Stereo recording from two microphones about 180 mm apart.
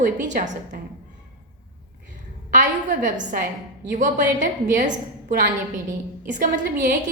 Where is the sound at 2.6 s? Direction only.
45° right (ahead or behind).